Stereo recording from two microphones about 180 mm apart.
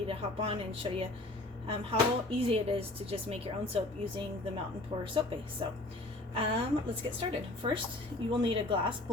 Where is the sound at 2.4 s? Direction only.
35° right (ahead or behind).